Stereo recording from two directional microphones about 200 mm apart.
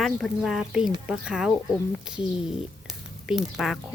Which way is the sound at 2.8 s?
Centre (ahead or behind).